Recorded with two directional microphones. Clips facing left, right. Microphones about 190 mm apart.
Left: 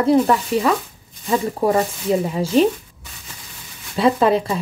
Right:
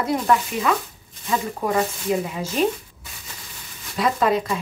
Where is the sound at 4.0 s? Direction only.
30° left (ahead or behind).